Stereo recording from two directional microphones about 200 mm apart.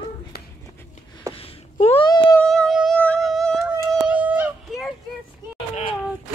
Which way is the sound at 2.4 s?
5° left (ahead or behind).